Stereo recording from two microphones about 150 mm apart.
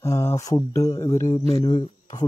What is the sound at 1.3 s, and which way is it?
Speech, 45° left (ahead or behind).